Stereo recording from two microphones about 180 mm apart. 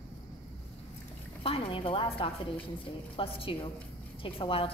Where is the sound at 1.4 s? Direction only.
30° left (ahead or behind).